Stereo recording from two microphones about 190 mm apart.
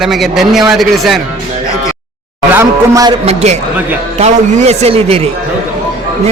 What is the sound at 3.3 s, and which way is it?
A man's voice, 35° right (ahead or behind).